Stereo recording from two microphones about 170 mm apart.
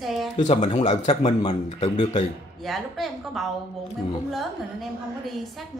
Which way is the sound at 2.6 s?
Centre (ahead or behind).